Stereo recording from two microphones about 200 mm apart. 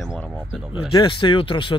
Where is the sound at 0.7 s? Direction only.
25° left (ahead or behind).